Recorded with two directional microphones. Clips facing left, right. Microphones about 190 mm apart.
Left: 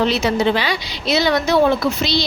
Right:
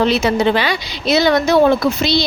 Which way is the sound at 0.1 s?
55° right (ahead or behind).